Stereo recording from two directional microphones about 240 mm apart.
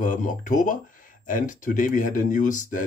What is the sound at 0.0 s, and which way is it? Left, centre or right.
Speech, left.